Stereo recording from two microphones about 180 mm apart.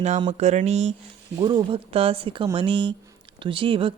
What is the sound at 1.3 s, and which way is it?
Speech, 25° right (ahead or behind).